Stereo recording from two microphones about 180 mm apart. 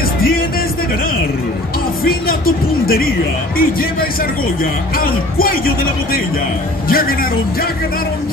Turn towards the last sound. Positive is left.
turn(degrees=55)  # may be behind; listen again after turning